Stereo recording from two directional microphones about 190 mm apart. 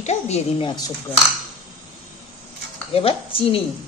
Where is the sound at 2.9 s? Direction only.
30° left (ahead or behind).